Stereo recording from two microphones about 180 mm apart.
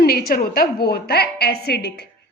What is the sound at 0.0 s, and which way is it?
A woman's voice, 60° left (ahead or behind).